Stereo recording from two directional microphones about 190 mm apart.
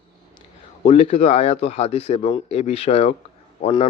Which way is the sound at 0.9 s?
30° left (ahead or behind).